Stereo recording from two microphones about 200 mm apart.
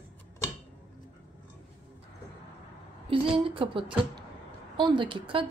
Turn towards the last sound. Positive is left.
turn(degrees=-25)  # may be behind; listen again after turning